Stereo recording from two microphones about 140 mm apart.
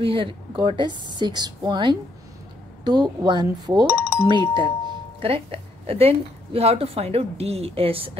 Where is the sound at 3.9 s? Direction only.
20° left (ahead or behind).